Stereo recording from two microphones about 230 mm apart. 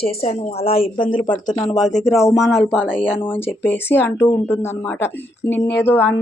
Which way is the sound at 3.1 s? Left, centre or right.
Centre.